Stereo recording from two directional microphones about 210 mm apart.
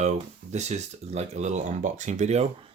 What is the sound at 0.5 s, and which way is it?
Speech, 30° right (ahead or behind).